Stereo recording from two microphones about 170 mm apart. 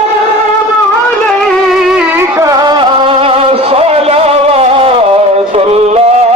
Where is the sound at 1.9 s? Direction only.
15° right (ahead or behind); by 6.1 s 35° right (ahead or behind).